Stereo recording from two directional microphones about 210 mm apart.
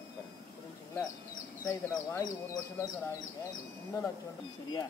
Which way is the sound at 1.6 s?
15° left (ahead or behind).